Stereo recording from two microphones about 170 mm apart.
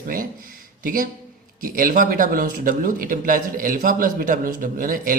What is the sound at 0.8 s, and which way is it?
Speech, 55° right (ahead or behind).